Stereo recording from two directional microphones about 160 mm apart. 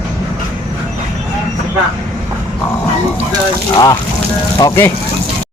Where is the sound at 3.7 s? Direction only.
25° left (ahead or behind).